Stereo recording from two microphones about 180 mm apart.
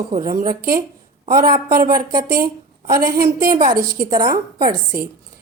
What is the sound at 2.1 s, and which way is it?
Speech, 20° right (ahead or behind).